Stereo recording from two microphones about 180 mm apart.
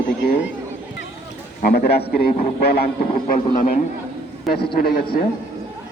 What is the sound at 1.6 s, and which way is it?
A man's voice, 55° left (ahead or behind).